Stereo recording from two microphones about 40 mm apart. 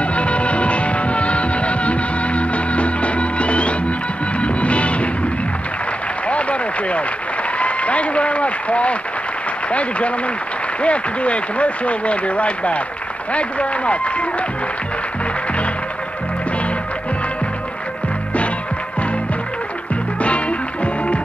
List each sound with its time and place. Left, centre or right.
0.0 s music: left
6.2 s a sound: left
7.5 s applause: left
9.7 s speech: left
20.2 s music: left